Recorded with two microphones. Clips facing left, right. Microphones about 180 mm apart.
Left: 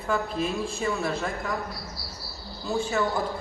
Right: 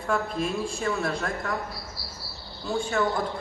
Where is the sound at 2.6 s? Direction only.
Centre (ahead or behind).